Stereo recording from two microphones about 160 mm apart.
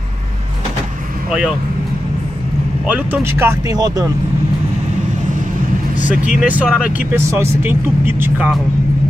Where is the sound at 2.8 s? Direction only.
10° right (ahead or behind); by 4.0 s 25° right (ahead or behind).